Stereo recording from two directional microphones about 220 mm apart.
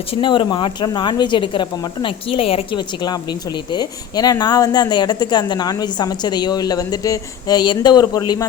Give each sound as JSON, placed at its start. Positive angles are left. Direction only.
{"t": 0.1, "sound": "a woman's voice", "side_deg": 20}